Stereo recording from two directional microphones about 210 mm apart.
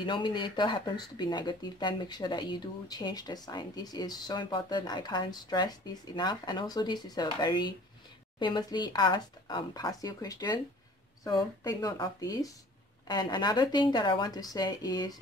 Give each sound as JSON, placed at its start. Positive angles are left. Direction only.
{"t": 0.0, "sound": "speech", "side_deg": 20}